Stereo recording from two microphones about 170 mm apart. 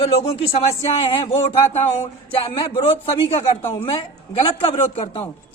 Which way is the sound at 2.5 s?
30° left (ahead or behind).